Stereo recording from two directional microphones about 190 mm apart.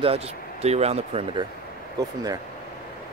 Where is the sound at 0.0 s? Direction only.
30° right (ahead or behind).